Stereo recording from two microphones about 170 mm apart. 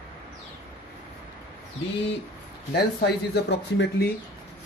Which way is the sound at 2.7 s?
90° left.